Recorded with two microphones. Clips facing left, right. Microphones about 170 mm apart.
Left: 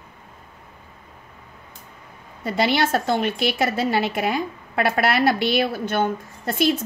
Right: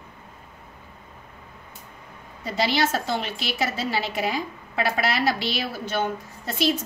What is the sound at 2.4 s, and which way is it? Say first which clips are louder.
A woman's voice: left 3 dB; 55° left (ahead or behind).